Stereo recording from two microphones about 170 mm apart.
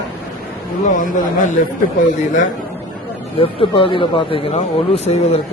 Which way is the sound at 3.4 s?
30° left (ahead or behind).